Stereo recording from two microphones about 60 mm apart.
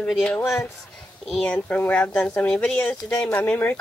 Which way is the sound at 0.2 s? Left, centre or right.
Left.